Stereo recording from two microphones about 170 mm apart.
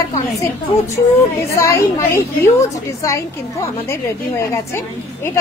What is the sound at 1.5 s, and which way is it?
A woman's voice, 20° left (ahead or behind).